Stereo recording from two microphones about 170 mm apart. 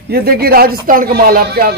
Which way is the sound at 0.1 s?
65° right (ahead or behind).